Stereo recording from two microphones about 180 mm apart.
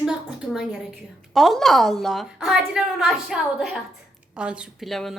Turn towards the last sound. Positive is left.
turn(degrees=0)  # may be behind; listen again after turning